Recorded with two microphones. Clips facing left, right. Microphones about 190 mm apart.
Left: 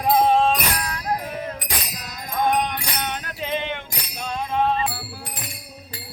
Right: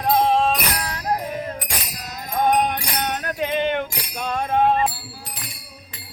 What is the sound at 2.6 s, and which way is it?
Music, 45° right (ahead or behind).